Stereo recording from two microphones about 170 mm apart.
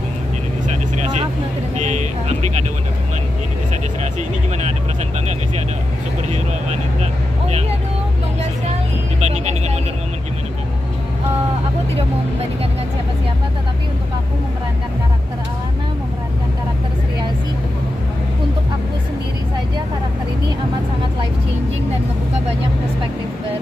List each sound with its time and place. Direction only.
0.7 s vehicle: 45° right (ahead or behind)
1.8 s speech: 45° right (ahead or behind)
6.3 s speech: 40° right (ahead or behind)
9.2 s vehicle: 40° right (ahead or behind)